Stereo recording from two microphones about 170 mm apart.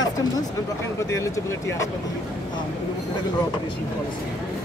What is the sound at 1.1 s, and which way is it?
Speech, 20° left (ahead or behind).